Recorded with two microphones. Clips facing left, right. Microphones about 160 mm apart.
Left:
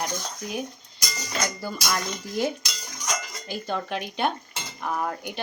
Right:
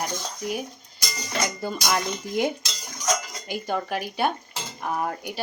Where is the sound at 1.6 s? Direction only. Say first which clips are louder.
Right 3 dB; 20° right (ahead or behind).